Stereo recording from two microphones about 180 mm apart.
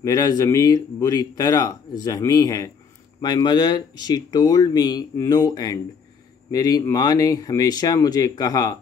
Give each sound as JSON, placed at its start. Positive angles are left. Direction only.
{"t": 0.0, "sound": "a man's voice", "side_deg": 20}